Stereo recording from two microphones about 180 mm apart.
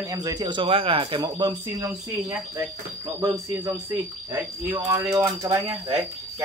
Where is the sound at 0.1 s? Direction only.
20° right (ahead or behind).